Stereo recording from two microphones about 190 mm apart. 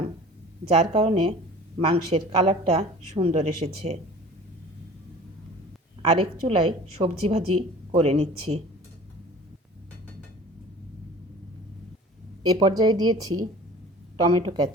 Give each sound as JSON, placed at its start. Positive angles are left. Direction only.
{"t": 0.9, "sound": "a woman's voice", "side_deg": -30}
{"t": 6.0, "sound": "a woman's voice", "side_deg": -30}
{"t": 12.4, "sound": "speech", "side_deg": -20}